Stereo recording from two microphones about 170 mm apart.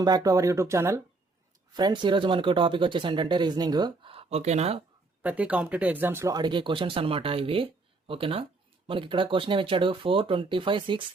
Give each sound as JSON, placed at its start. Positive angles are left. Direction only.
{"t": 0.0, "sound": "speech", "side_deg": -20}
{"t": 1.7, "sound": "speech", "side_deg": -25}
{"t": 5.2, "sound": "speech", "side_deg": -10}